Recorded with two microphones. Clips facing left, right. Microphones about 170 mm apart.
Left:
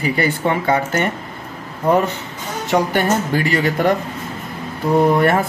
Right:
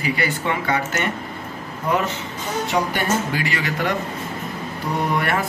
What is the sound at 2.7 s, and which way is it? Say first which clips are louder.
Speech: left 6 dB; 55° left (ahead or behind).